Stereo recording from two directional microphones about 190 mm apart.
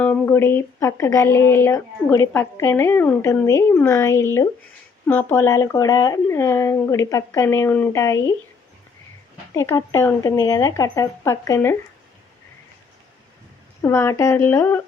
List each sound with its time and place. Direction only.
0.0 s speech: 10° left (ahead or behind)
9.5 s speech: 15° left (ahead or behind)
13.8 s speech: 15° left (ahead or behind)